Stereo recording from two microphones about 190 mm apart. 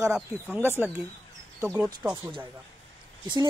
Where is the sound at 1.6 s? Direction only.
5° right (ahead or behind).